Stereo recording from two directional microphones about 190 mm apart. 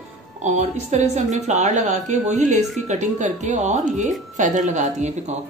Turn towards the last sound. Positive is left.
turn(degrees=-40)  # may be behind; listen again after turning